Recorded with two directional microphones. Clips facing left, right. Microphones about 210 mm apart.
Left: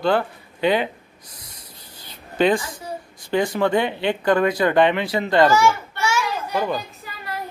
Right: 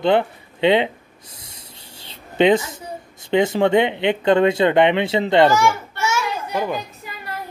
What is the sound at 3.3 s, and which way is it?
Speech, 25° right (ahead or behind).